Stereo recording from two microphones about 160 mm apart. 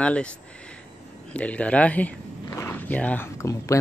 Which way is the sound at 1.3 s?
10° left (ahead or behind).